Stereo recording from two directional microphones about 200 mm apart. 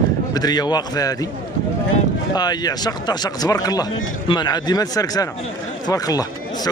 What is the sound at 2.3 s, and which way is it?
Speech, 20° left (ahead or behind).